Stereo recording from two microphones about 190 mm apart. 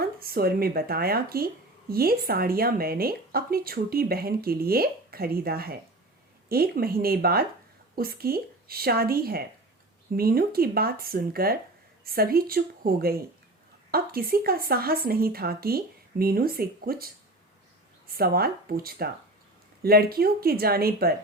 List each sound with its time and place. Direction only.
0.0 s speech: 50° right (ahead or behind)
18.1 s speech: 50° right (ahead or behind)